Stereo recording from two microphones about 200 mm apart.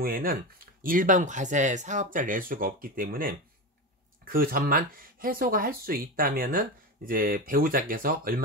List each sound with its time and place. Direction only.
0.0 s speech: 45° right (ahead or behind)